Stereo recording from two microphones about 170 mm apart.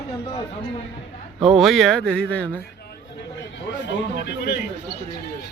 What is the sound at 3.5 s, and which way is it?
A man's voice, 90° left.